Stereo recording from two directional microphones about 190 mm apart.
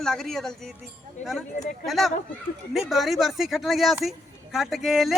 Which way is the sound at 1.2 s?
40° left (ahead or behind).